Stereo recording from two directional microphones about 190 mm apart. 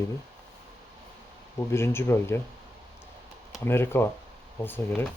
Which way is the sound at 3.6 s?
10° left (ahead or behind).